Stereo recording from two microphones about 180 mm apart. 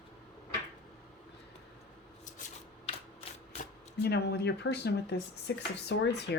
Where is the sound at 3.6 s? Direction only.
65° left (ahead or behind).